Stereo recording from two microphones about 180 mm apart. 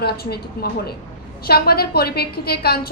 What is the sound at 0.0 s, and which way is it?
A woman's voice, 60° left (ahead or behind).